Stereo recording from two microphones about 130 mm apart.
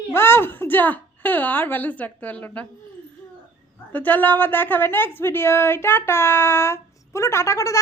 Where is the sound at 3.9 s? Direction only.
15° left (ahead or behind).